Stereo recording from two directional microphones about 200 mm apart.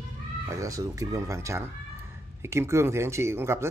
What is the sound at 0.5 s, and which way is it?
Speech, 15° right (ahead or behind).